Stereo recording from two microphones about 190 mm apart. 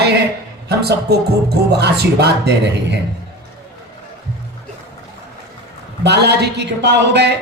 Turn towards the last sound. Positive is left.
turn(degrees=-65)  # may be behind; listen again after turning